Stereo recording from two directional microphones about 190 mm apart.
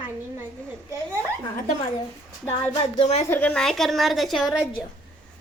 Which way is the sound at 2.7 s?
30° left (ahead or behind).